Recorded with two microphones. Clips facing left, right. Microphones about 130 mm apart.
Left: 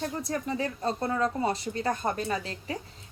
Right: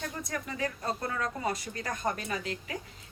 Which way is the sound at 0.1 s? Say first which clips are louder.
Left 6 dB; 30° left (ahead or behind).